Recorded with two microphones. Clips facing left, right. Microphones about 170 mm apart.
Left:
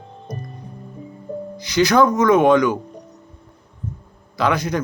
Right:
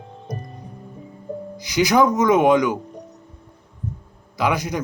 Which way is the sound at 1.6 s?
15° right (ahead or behind).